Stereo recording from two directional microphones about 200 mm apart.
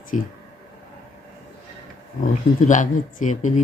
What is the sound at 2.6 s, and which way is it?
Speech, 40° left (ahead or behind).